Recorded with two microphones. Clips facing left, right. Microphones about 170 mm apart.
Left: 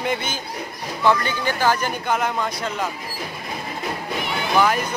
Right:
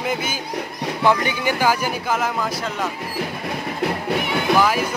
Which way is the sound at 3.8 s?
70° right (ahead or behind).